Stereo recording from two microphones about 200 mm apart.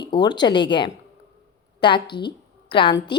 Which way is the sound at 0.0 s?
20° left (ahead or behind).